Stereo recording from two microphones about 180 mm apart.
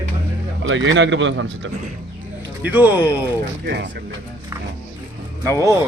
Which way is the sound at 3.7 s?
75° right (ahead or behind).